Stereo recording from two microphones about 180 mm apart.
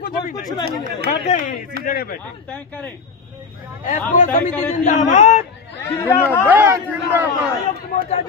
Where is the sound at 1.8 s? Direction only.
55° left (ahead or behind).